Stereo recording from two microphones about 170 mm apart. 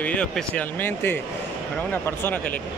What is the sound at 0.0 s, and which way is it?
Speech, 10° left (ahead or behind).